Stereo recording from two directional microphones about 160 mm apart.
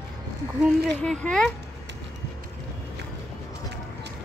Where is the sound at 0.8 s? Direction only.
5° left (ahead or behind).